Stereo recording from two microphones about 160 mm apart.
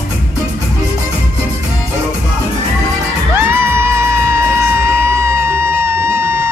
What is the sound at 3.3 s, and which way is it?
Music, 15° right (ahead or behind).